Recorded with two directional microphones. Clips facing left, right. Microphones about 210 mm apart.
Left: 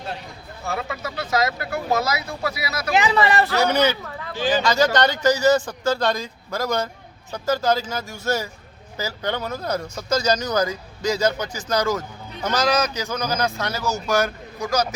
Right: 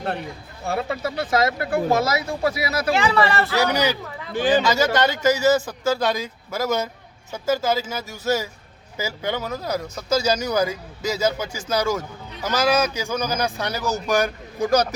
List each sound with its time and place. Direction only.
0.6 s speech: 30° right (ahead or behind)
2.9 s speech: 20° left (ahead or behind)
3.5 s speech: centre (ahead or behind)
14.6 s speech: 35° right (ahead or behind)